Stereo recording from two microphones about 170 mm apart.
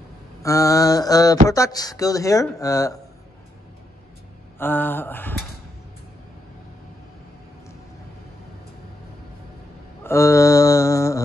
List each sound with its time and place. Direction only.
0.4 s speech: 20° left (ahead or behind)
4.6 s speech: 10° left (ahead or behind)
10.0 s mantra: 15° left (ahead or behind)